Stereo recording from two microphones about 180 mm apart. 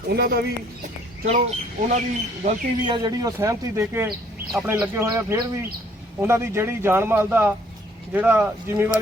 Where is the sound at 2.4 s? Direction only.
30° right (ahead or behind).